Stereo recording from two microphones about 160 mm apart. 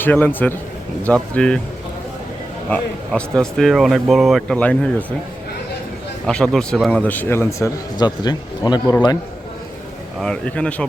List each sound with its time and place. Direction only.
0.0 s speech: 10° left (ahead or behind)
2.6 s speech: 5° left (ahead or behind)
6.2 s speech: 5° left (ahead or behind); by 9.1 s 25° left (ahead or behind)
10.2 s speech: 5° left (ahead or behind)